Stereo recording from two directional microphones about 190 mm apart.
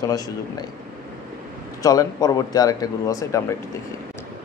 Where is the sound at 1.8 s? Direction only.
20° left (ahead or behind).